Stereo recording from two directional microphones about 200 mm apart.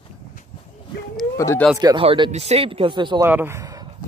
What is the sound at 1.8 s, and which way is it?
Speech, 25° right (ahead or behind).